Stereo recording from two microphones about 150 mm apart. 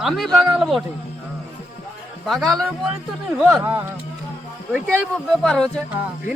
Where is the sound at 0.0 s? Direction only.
Centre (ahead or behind).